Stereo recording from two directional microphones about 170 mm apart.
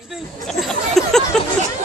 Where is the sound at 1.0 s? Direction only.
Centre (ahead or behind).